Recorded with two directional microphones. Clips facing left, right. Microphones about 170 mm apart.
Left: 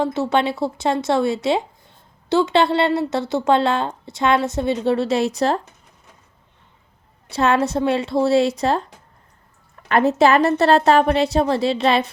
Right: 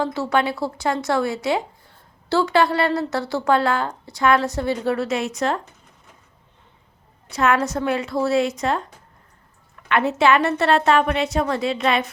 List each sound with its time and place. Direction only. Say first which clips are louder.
0.0 s a woman's voice: left 2 dB; 20° left (ahead or behind)
7.3 s a woman's voice: left 2 dB; 30° left (ahead or behind)
9.9 s a woman's voice: left 3 dB; 40° left (ahead or behind)